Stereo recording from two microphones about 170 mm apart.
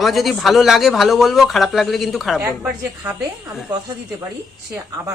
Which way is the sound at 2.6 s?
15° right (ahead or behind).